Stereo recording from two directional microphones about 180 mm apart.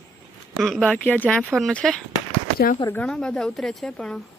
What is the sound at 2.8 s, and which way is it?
Speech, 15° left (ahead or behind).